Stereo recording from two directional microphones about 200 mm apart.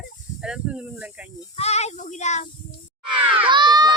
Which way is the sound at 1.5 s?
35° left (ahead or behind).